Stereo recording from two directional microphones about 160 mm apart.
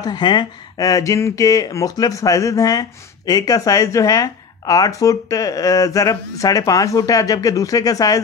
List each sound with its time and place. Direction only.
0.0 s speech: 25° left (ahead or behind)